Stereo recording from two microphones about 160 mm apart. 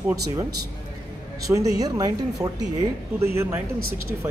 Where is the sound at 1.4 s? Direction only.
20° right (ahead or behind).